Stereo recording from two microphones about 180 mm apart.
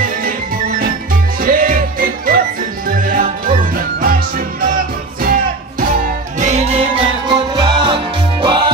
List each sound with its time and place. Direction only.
0.2 s music: 50° right (ahead or behind)
6.4 s music: 35° right (ahead or behind)